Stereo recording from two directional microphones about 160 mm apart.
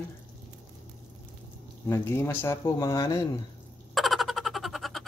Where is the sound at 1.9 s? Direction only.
20° left (ahead or behind).